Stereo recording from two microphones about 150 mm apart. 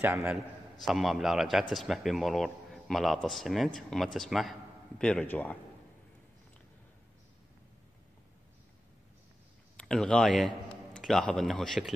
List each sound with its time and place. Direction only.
0.0 s a man's voice: 15° right (ahead or behind)
0.3 s a man's voice: centre (ahead or behind)
9.8 s a man's voice: 5° left (ahead or behind)